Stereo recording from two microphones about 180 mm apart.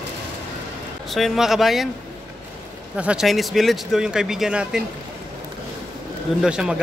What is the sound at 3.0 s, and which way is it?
Speech, 5° right (ahead or behind).